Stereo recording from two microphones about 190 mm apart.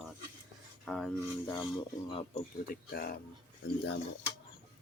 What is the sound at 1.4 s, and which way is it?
Speech, 25° left (ahead or behind).